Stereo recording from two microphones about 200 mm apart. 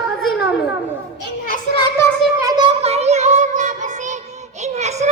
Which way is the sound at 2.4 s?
20° right (ahead or behind).